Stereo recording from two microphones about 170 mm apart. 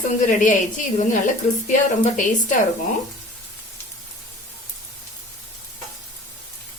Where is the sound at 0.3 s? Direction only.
50° left (ahead or behind).